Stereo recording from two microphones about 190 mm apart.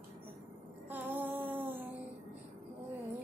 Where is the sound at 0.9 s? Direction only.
10° right (ahead or behind).